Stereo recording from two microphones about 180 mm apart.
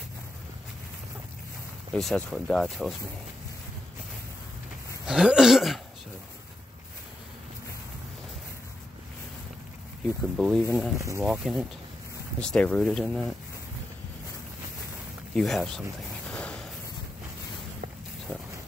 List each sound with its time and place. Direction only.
2.0 s speech: 5° left (ahead or behind)
5.0 s a sound: 5° right (ahead or behind)
10.3 s speech: centre (ahead or behind)
11.0 s speech: 15° right (ahead or behind)
11.2 s speech: centre (ahead or behind)
15.3 s speech: 5° left (ahead or behind)
16.3 s a sound: 5° left (ahead or behind)